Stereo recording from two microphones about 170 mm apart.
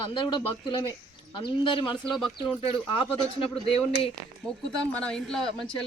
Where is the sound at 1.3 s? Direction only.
30° left (ahead or behind).